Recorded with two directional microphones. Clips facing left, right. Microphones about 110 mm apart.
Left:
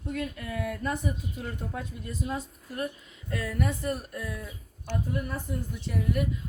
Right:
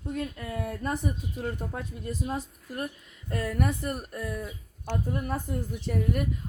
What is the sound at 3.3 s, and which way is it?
A woman's voice, 45° right (ahead or behind).